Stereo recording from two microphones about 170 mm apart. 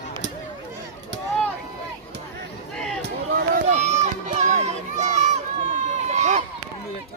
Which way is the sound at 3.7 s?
40° right (ahead or behind).